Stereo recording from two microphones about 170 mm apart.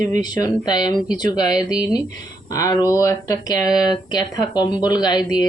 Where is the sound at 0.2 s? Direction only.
25° left (ahead or behind).